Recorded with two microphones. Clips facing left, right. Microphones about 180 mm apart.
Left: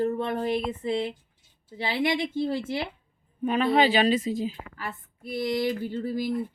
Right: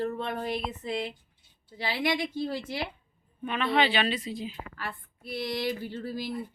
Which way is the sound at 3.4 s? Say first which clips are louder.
Left 5 dB; 40° left (ahead or behind).